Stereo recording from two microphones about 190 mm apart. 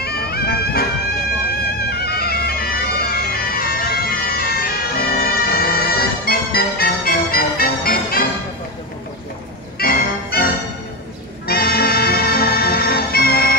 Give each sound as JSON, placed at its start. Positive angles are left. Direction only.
{"t": 0.0, "sound": "music", "side_deg": 55}
{"t": 1.5, "sound": "bagpipes", "side_deg": 55}
{"t": 9.8, "sound": "music", "side_deg": 50}